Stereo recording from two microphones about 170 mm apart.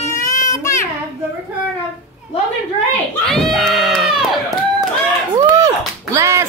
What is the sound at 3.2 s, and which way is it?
Crowd, centre (ahead or behind).